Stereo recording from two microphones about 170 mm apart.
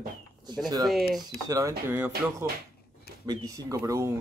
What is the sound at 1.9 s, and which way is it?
Speech, 10° right (ahead or behind).